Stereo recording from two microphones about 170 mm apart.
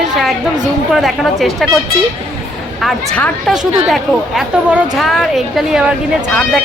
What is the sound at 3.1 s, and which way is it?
A woman's voice, 5° left (ahead or behind).